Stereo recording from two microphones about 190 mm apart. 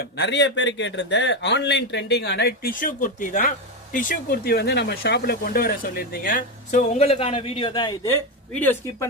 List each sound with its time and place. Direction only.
0.0 s a man's voice: 65° left (ahead or behind); by 9.0 s 10° left (ahead or behind)